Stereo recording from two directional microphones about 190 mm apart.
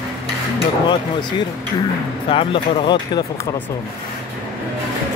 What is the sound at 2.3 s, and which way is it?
Speech, 25° left (ahead or behind).